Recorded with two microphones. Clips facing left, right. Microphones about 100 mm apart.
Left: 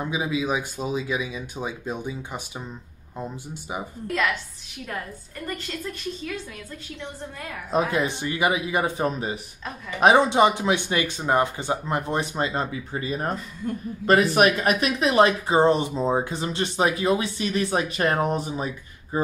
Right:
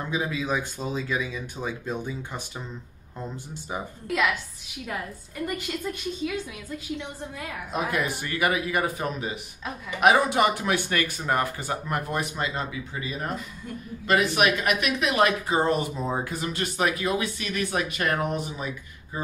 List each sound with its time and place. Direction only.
0.1 s speech: 15° left (ahead or behind)
4.1 s a woman's voice: 5° right (ahead or behind)
7.7 s speech: 25° left (ahead or behind)